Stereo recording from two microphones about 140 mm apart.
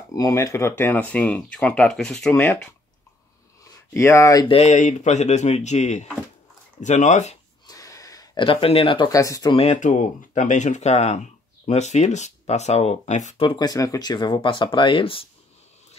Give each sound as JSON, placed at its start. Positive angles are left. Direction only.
{"t": 0.1, "sound": "speech", "side_deg": 20}
{"t": 2.3, "sound": "speech", "side_deg": 15}
{"t": 3.7, "sound": "speech", "side_deg": 20}
{"t": 4.5, "sound": "speech", "side_deg": 45}
{"t": 4.7, "sound": "speech", "side_deg": 60}
{"t": 7.6, "sound": "a sound", "side_deg": 25}
{"t": 8.5, "sound": "speech", "side_deg": 40}
{"t": 9.1, "sound": "speech", "side_deg": 25}
{"t": 9.5, "sound": "speech", "side_deg": 45}
{"t": 9.8, "sound": "speech", "side_deg": 60}
{"t": 13.4, "sound": "speech", "side_deg": 35}